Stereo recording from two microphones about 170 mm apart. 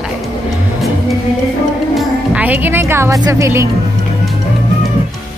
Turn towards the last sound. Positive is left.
turn(degrees=-15)  # may be behind; listen again after turning